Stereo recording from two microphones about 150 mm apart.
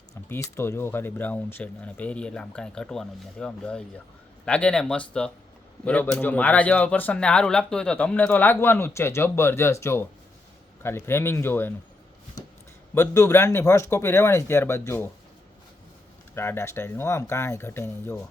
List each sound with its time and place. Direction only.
0.3 s speech: 15° left (ahead or behind)
12.9 s speech: 20° left (ahead or behind)
16.3 s speech: 15° left (ahead or behind)